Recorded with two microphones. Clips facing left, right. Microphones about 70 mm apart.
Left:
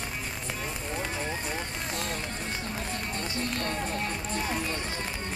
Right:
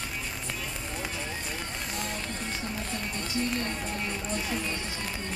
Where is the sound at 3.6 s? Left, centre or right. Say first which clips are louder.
Left 2 dB; left.